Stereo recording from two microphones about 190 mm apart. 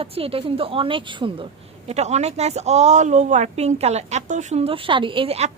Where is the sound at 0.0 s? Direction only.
30° right (ahead or behind).